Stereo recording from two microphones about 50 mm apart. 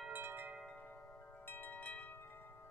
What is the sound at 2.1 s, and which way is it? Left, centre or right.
Wind chime, left.